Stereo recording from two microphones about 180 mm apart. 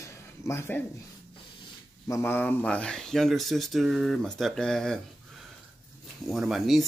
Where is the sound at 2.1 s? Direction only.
15° left (ahead or behind).